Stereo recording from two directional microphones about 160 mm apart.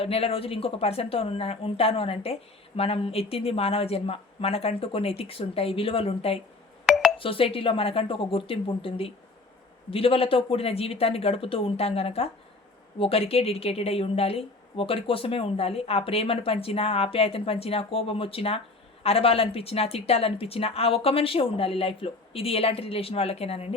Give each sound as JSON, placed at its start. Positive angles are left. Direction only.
{"t": 0.0, "sound": "speech", "side_deg": 35}